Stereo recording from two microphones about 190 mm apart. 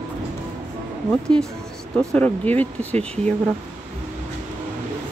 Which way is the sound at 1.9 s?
5° left (ahead or behind).